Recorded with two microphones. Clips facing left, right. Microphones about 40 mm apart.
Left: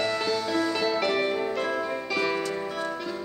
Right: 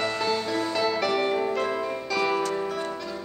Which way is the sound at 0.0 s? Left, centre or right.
Right.